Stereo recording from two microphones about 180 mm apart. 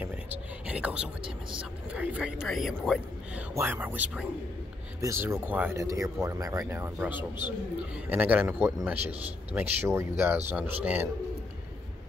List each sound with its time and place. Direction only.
0.0 s a sound: 10° right (ahead or behind)
1.6 s speech: 5° right (ahead or behind)
3.5 s speech: 10° right (ahead or behind)
7.2 s a man's voice: 25° left (ahead or behind)
7.9 s speech: 10° right (ahead or behind)